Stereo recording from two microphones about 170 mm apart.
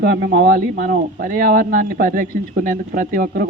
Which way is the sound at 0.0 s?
75° right (ahead or behind).